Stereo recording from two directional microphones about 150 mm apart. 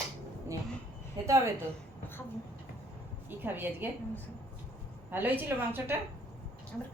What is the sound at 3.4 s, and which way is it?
Speech, 15° right (ahead or behind).